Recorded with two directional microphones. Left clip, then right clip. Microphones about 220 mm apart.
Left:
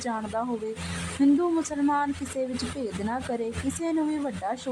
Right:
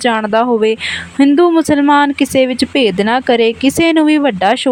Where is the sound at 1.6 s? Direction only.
35° right (ahead or behind).